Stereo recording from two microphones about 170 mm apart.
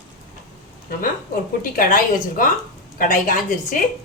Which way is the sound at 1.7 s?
55° left (ahead or behind).